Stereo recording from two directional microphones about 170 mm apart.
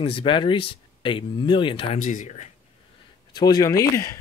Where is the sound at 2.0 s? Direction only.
50° left (ahead or behind).